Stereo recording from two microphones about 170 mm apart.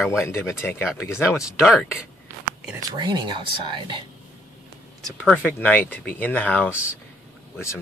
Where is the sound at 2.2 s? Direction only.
10° right (ahead or behind).